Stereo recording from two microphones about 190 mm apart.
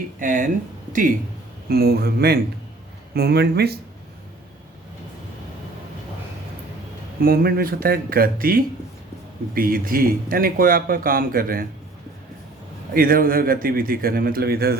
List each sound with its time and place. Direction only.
0.2 s speech: 45° right (ahead or behind)
1.7 s speech: 55° right (ahead or behind)
7.2 s speech: 50° right (ahead or behind)
12.9 s speech: 50° right (ahead or behind)